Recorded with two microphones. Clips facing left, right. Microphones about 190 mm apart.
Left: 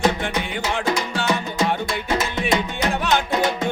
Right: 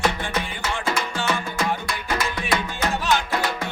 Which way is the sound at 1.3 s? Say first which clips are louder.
Left 4 dB; 20° left (ahead or behind).